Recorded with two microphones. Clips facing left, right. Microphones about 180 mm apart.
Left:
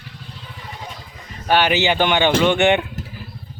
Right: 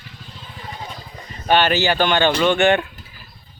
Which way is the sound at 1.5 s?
15° left (ahead or behind).